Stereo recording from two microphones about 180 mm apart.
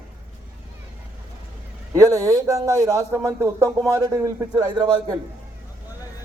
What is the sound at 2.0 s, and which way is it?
A man's voice, 20° right (ahead or behind).